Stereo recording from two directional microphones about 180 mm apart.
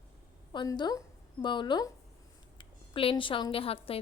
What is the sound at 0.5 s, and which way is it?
A woman's voice, 25° left (ahead or behind).